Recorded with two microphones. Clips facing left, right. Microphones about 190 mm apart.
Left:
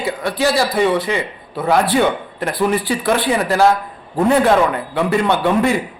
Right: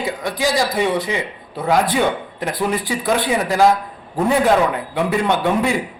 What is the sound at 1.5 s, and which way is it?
Speech, 5° left (ahead or behind).